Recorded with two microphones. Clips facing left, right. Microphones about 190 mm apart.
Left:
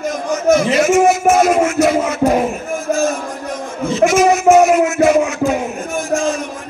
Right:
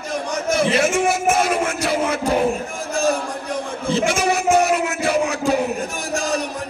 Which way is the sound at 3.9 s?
30° right (ahead or behind).